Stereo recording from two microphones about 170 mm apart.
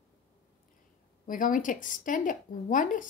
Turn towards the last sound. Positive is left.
turn(degrees=50)  # may be behind; listen again after turning